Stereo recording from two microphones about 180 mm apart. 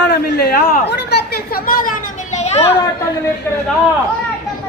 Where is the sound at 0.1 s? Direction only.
60° left (ahead or behind).